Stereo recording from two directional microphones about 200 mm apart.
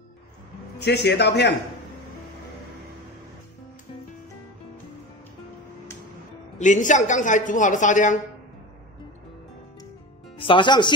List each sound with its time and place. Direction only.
0.7 s a man's voice: 55° left (ahead or behind)
6.6 s speech: 40° left (ahead or behind)
10.3 s speech: 25° left (ahead or behind)